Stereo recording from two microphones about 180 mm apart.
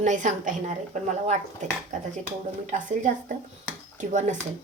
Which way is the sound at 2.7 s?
45° right (ahead or behind).